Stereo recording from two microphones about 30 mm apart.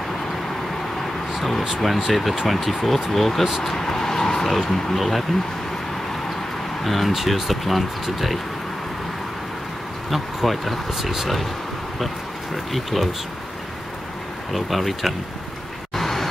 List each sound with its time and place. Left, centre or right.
2.0 s speech: centre
3.6 s vehicle: centre
4.5 s speech: centre
6.8 s speech: centre
10.1 s speech: centre
12.7 s speech: centre
14.5 s speech: centre
16.0 s a sound: centre